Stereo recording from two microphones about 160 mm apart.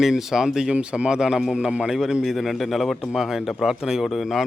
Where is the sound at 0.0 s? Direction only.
Centre (ahead or behind).